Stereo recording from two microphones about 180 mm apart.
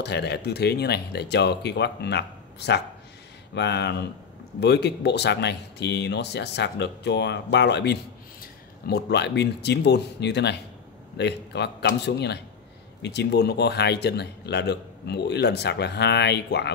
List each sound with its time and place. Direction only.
0.0 s speech: 70° left (ahead or behind)